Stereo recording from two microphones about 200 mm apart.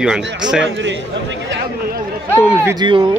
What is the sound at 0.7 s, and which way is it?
Speech, 65° right (ahead or behind).